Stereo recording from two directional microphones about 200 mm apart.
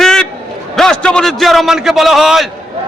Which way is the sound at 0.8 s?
5° left (ahead or behind).